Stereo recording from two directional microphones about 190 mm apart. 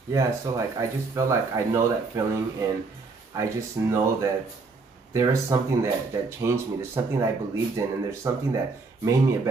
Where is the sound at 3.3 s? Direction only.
15° right (ahead or behind).